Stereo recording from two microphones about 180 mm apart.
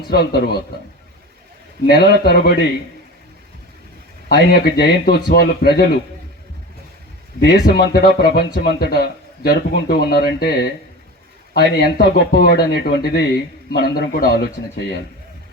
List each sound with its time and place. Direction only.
0.1 s speech: 60° left (ahead or behind)
1.9 s speech: 65° left (ahead or behind)
4.3 s speech: 60° left (ahead or behind)
7.4 s speech: 65° left (ahead or behind)